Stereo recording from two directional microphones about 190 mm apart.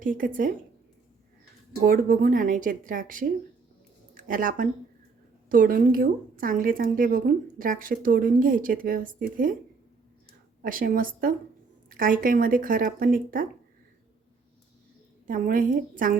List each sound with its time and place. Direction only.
0.0 s speech: 45° right (ahead or behind)
1.8 s speech: 45° right (ahead or behind)
10.6 s speech: 45° right (ahead or behind)
15.3 s speech: 45° right (ahead or behind)